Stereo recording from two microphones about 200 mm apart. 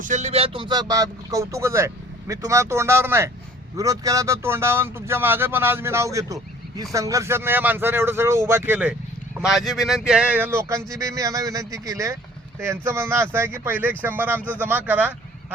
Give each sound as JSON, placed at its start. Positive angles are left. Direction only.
{"t": 0.0, "sound": "speech", "side_deg": -35}